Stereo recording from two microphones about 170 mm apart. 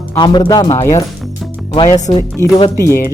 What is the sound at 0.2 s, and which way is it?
Speech, 25° left (ahead or behind).